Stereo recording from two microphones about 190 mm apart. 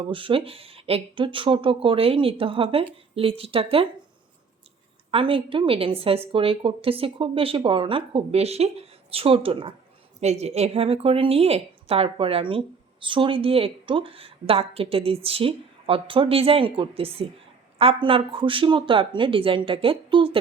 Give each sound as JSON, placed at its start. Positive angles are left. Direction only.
{"t": 0.0, "sound": "a woman's voice", "side_deg": -25}
{"t": 5.1, "sound": "a woman's voice", "side_deg": -25}